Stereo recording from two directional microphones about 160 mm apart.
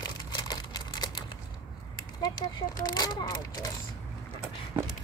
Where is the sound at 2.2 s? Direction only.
25° left (ahead or behind).